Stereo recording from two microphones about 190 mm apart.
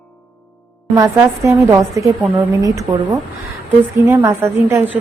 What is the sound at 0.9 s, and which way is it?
A woman's voice, 15° right (ahead or behind).